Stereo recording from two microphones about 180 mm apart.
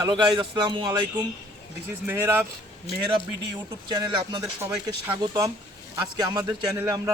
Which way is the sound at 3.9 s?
20° right (ahead or behind).